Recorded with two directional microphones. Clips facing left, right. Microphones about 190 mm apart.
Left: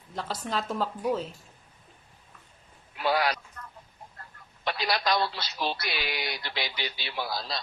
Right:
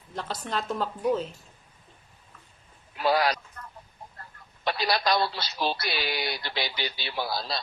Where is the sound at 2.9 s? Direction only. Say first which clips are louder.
Right 2 dB; 40° right (ahead or behind).